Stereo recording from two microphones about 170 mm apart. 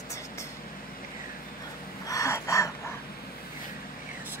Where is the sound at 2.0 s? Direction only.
20° left (ahead or behind).